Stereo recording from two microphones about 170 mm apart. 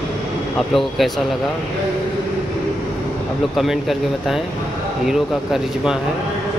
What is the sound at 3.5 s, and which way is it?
Speech, centre (ahead or behind).